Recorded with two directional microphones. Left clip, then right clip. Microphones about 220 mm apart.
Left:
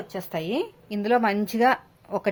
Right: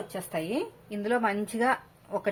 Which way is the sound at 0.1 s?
40° left (ahead or behind).